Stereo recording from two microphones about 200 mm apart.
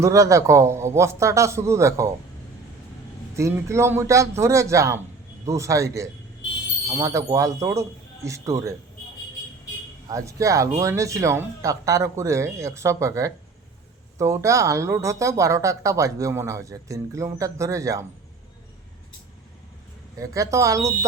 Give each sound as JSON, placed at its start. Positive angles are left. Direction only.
{"t": 0.0, "sound": "speech", "side_deg": -15}
{"t": 3.3, "sound": "speech", "side_deg": -15}
{"t": 10.1, "sound": "speech", "side_deg": -15}
{"t": 20.1, "sound": "speech", "side_deg": -15}